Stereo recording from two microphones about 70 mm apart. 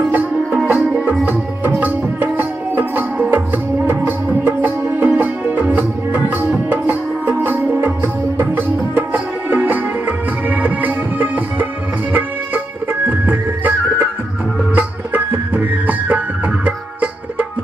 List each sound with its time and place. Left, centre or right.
0.1 s music: right